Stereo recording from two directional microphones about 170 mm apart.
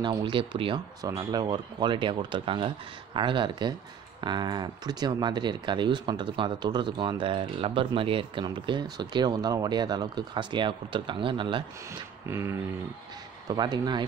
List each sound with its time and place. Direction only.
0.0 s speech: 25° right (ahead or behind)
12.3 s a sound: 15° right (ahead or behind)
13.5 s speech: 25° right (ahead or behind)